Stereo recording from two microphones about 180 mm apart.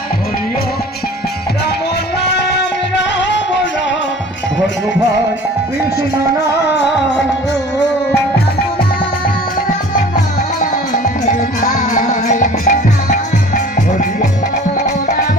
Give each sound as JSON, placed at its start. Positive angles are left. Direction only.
{"t": 2.3, "sound": "music", "side_deg": 75}
{"t": 9.9, "sound": "music", "side_deg": 45}